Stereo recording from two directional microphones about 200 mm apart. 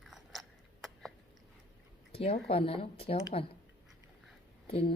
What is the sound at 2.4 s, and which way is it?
Speech, 30° left (ahead or behind).